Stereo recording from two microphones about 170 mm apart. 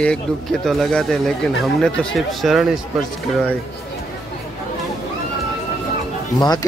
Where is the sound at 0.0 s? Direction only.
5° left (ahead or behind).